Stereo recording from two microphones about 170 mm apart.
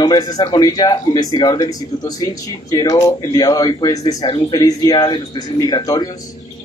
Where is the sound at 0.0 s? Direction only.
25° left (ahead or behind).